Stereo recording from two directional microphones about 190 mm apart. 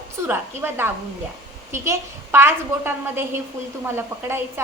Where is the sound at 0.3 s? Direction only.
10° right (ahead or behind).